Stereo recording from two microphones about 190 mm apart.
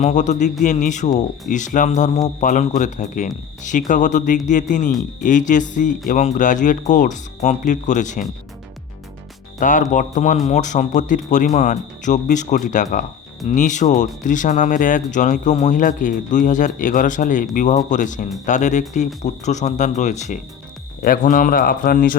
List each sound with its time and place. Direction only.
0.0 s speech: 40° left (ahead or behind)
9.6 s a man's voice: 40° left (ahead or behind)